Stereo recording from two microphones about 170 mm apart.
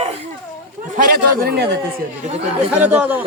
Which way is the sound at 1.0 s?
60° right (ahead or behind).